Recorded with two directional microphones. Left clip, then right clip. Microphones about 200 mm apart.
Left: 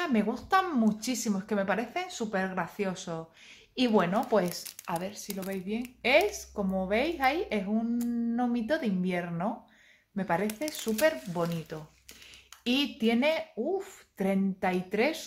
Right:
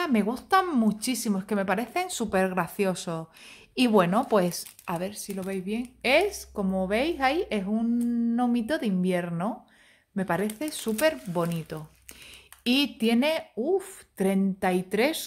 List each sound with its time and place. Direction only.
0.0 s speech: 30° right (ahead or behind)